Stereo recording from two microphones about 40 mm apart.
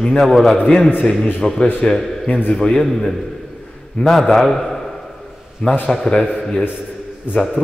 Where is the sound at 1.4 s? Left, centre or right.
Centre.